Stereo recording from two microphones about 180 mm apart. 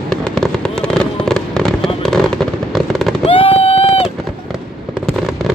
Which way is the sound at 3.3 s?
30° left (ahead or behind).